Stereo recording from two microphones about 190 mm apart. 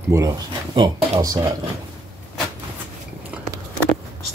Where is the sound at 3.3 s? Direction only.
5° right (ahead or behind).